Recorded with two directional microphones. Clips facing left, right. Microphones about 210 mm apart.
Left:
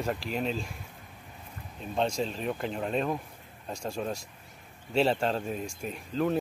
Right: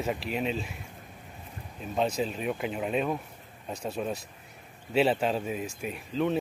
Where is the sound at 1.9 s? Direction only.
5° right (ahead or behind).